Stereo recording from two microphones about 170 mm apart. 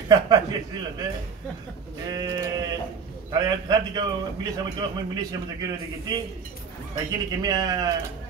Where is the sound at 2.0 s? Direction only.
20° right (ahead or behind).